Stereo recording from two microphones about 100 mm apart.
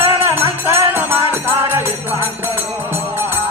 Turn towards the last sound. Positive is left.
turn(degrees=-20)  # may be behind; listen again after turning